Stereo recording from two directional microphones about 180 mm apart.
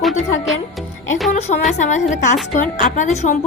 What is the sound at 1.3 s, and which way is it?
A woman's voice, 40° left (ahead or behind).